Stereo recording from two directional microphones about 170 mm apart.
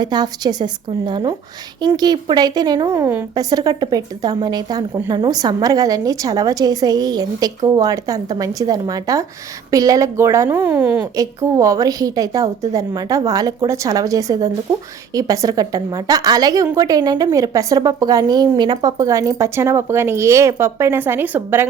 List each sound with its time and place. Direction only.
0.0 s a woman's voice: 25° right (ahead or behind)